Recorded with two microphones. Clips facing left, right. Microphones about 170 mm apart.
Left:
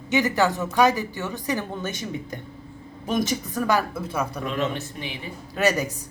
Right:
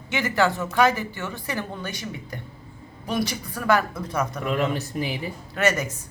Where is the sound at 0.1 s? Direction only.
15° left (ahead or behind).